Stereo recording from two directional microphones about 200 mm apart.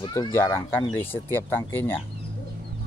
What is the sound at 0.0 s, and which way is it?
Speech, 20° left (ahead or behind).